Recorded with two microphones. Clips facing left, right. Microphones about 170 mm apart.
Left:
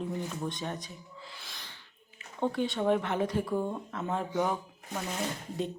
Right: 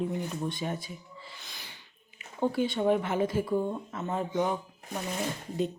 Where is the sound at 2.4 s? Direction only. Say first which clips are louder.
Right 2 dB; 5° right (ahead or behind).